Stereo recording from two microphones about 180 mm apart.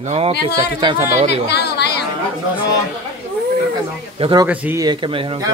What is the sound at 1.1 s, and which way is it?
Speech, 40° right (ahead or behind).